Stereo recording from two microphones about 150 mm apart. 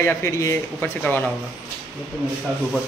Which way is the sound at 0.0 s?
20° left (ahead or behind).